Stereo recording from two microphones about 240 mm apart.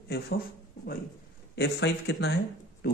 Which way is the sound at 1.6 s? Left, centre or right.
Left.